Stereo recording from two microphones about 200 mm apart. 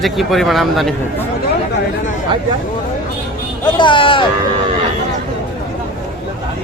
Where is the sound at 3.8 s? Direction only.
25° left (ahead or behind).